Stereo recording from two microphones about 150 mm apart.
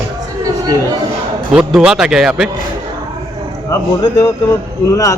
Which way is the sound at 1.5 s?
5° right (ahead or behind).